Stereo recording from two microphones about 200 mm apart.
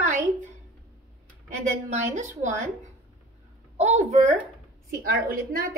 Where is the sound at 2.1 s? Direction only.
40° right (ahead or behind).